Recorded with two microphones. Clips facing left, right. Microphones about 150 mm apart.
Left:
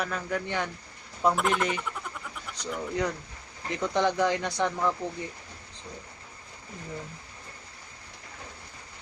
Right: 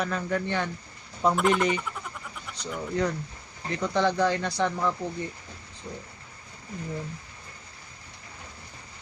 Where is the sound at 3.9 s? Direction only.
15° left (ahead or behind).